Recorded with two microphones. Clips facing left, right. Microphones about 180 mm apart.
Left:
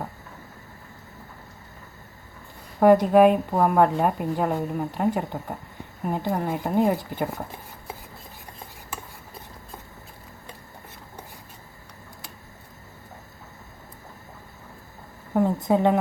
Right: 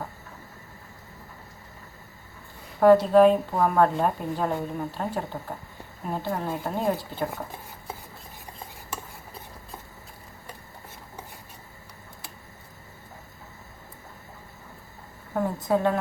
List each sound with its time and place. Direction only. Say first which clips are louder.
2.8 s a woman's voice: left 1 dB; 15° left (ahead or behind)
15.3 s a sound: left 5 dB; 20° left (ahead or behind)
15.6 s a woman's voice: left 1 dB; 20° left (ahead or behind)